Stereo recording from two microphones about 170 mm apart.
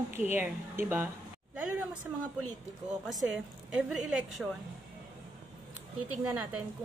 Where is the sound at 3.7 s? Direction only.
Centre (ahead or behind).